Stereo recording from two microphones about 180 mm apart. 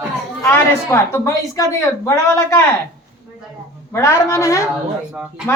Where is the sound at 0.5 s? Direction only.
15° left (ahead or behind).